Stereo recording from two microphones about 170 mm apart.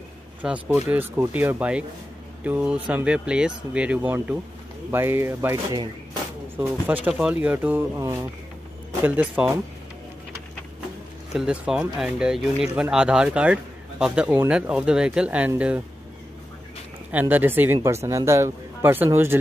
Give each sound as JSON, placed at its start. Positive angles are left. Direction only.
{"t": 0.4, "sound": "speech", "side_deg": -5}
{"t": 11.3, "sound": "speech", "side_deg": -5}
{"t": 17.1, "sound": "speech", "side_deg": -10}